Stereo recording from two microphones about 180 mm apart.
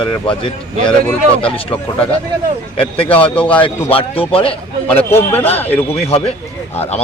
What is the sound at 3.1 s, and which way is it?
Speech, 30° left (ahead or behind).